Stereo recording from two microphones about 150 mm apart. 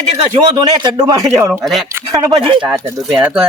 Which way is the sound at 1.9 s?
20° right (ahead or behind).